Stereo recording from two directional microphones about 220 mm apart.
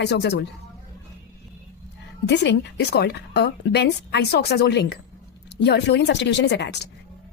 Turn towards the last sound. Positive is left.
turn(degrees=50)  # may be behind; listen again after turning